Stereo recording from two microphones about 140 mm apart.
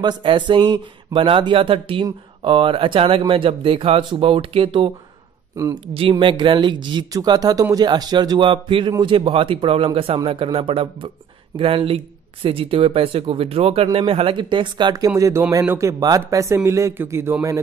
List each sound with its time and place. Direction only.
0.0 s speech: 35° right (ahead or behind)
5.9 s speech: 40° right (ahead or behind); by 17.6 s 20° right (ahead or behind)